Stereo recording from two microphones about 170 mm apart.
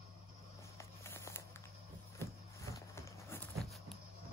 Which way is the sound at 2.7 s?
15° left (ahead or behind).